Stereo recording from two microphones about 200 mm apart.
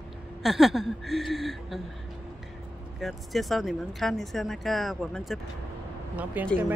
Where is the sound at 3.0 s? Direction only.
Centre (ahead or behind).